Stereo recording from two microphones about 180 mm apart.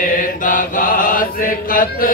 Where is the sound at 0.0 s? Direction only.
50° left (ahead or behind).